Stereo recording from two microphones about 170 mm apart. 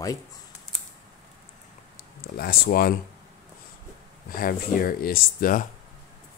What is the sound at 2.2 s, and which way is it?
Speech, 60° left (ahead or behind).